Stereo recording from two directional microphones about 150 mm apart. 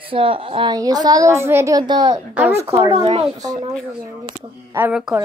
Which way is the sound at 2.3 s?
15° right (ahead or behind).